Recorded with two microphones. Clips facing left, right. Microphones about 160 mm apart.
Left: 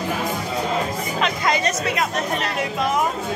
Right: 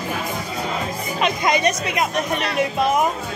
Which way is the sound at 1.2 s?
15° right (ahead or behind).